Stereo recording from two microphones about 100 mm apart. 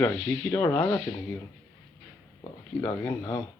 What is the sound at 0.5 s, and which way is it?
Speech, 15° left (ahead or behind).